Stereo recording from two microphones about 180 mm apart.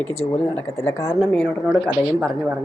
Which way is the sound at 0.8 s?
15° left (ahead or behind).